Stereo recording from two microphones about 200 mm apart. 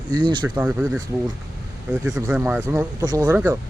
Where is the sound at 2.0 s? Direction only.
5° right (ahead or behind).